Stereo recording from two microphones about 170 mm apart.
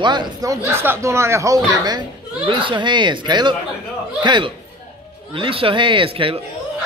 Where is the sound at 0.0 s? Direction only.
25° right (ahead or behind).